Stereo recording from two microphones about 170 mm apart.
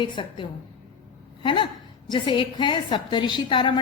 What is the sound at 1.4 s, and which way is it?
A woman's voice, 25° left (ahead or behind).